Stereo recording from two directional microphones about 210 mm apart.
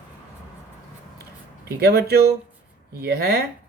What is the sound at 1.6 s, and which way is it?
Speech, 50° right (ahead or behind).